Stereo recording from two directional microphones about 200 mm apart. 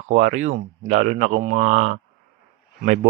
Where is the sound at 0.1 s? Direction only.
35° right (ahead or behind).